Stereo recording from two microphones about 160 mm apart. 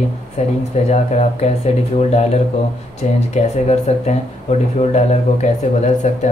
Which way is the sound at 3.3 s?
45° left (ahead or behind).